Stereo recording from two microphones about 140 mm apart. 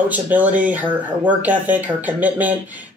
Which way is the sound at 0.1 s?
10° right (ahead or behind).